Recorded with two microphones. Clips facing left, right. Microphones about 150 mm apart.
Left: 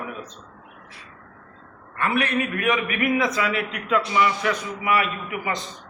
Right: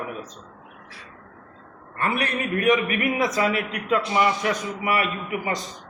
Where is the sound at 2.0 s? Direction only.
40° right (ahead or behind).